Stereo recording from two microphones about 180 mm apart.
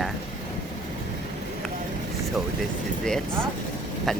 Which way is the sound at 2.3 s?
Centre (ahead or behind).